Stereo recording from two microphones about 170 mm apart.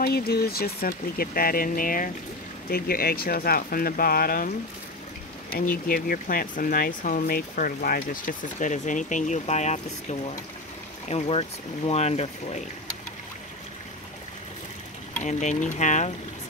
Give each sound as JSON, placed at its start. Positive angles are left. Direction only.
{"t": 0.0, "sound": "speech", "side_deg": 65}
{"t": 5.5, "sound": "speech", "side_deg": 60}
{"t": 15.2, "sound": "speech", "side_deg": 45}